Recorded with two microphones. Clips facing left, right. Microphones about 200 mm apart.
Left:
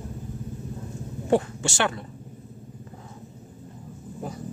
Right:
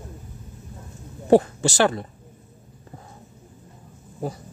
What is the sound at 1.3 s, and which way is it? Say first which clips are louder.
Speech: right 6 dB; 35° right (ahead or behind).